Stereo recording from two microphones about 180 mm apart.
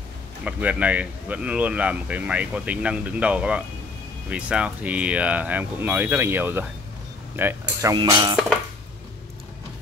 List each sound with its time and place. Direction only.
0.4 s speech: 5° right (ahead or behind)
7.9 s speech: 25° right (ahead or behind)